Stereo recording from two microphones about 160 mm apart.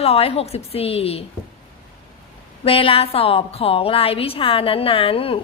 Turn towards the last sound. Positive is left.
turn(degrees=35)  # may be behind; listen again after turning